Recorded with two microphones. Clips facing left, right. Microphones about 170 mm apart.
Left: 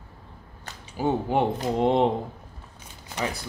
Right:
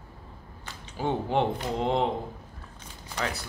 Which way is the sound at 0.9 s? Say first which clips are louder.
Left 3 dB; 10° left (ahead or behind).